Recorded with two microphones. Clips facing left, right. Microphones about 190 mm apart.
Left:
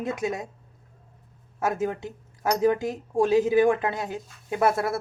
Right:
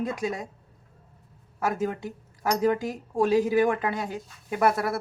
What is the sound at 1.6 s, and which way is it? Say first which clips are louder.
Speech: left 1 dB; 20° left (ahead or behind).